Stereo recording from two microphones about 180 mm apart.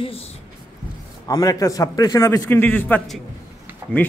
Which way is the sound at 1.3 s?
20° left (ahead or behind).